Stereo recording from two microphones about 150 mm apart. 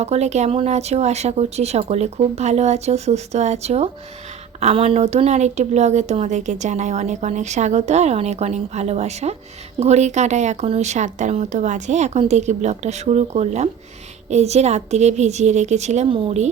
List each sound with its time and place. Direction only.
0.0 s speech: 45° right (ahead or behind)